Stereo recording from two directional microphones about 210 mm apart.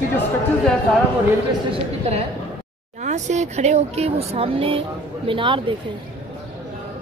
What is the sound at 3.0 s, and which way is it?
Speech, 35° right (ahead or behind).